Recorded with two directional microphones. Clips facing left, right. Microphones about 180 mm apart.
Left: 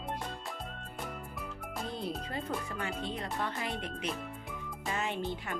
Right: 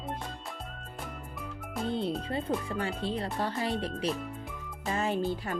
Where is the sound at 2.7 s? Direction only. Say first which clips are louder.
Right 5 dB; 30° right (ahead or behind).